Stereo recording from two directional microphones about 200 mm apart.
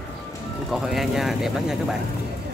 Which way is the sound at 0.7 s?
Centre (ahead or behind).